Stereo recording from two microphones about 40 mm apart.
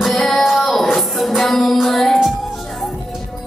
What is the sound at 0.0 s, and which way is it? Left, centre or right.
Child singing, centre.